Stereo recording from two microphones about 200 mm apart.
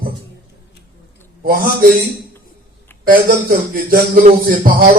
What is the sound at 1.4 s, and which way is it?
Speech, 45° right (ahead or behind).